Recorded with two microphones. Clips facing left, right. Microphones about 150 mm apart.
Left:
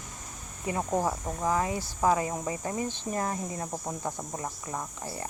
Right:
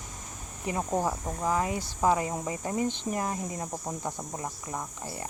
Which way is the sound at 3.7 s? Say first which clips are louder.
Left 1 dB; 5° left (ahead or behind).